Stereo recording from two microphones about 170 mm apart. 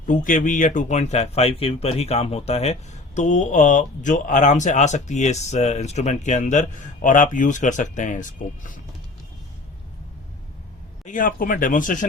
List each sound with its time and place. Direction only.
0.0 s speech: 50° left (ahead or behind)
11.0 s speech: 50° left (ahead or behind)